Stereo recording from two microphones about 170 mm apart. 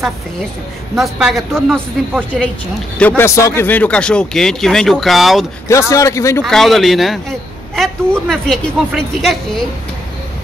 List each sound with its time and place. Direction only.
0.9 s a man's voice: centre (ahead or behind)
3.0 s a man's voice: 10° left (ahead or behind)
5.7 s speech: 15° left (ahead or behind)
6.4 s a man's voice: centre (ahead or behind)